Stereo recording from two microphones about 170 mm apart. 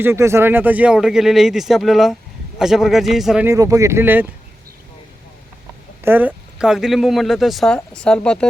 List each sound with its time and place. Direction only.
0.0 s speech: 15° right (ahead or behind)
3.4 s speech: 20° right (ahead or behind)
6.0 s speech: 10° right (ahead or behind); by 8.4 s 5° left (ahead or behind)